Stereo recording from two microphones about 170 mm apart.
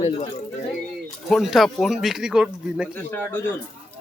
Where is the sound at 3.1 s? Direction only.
10° left (ahead or behind).